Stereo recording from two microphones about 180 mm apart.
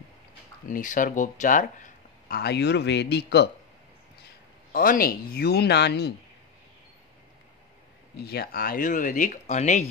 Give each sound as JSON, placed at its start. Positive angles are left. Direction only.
{"t": 0.7, "sound": "speech", "side_deg": 45}
{"t": 4.7, "sound": "speech", "side_deg": 50}
{"t": 8.3, "sound": "speech", "side_deg": 60}